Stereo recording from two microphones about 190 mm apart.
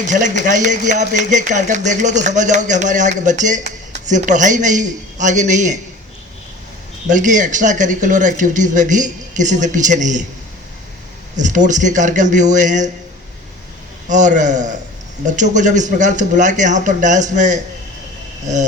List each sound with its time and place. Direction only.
0.1 s speech: 40° right (ahead or behind)
7.1 s speech: 40° right (ahead or behind)
11.3 s speech: 40° right (ahead or behind)
14.1 s speech: 40° right (ahead or behind)